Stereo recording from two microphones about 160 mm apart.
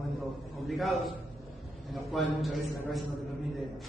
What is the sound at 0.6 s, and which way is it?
Speech, centre (ahead or behind).